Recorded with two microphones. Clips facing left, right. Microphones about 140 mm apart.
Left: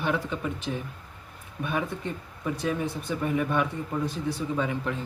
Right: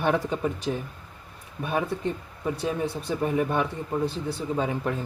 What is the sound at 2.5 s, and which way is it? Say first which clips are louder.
Speech: even; 30° right (ahead or behind).